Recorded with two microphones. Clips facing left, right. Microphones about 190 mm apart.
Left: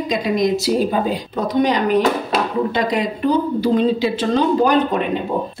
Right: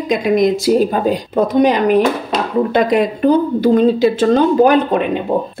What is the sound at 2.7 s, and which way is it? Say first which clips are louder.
A woman's voice: right 6 dB; 55° right (ahead or behind).